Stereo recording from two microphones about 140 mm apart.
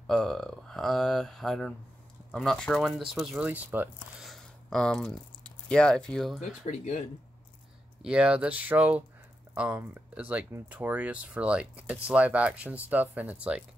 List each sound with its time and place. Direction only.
0.0 s speech: 5° left (ahead or behind); by 3.9 s 15° right (ahead or behind)
4.2 s a sound: centre (ahead or behind)
5.7 s speech: 5° left (ahead or behind)
6.4 s speech: 55° left (ahead or behind)
8.0 s speech: 10° right (ahead or behind)